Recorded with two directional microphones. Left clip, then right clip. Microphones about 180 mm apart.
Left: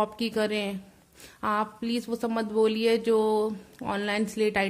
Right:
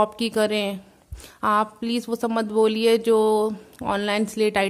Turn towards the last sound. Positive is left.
turn(degrees=-30)  # may be behind; listen again after turning